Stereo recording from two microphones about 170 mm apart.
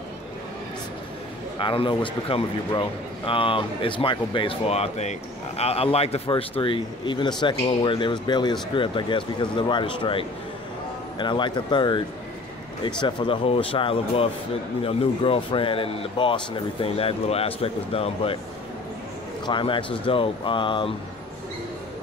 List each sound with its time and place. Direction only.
1.6 s a man's voice: 30° left (ahead or behind)
19.4 s speech: 30° left (ahead or behind)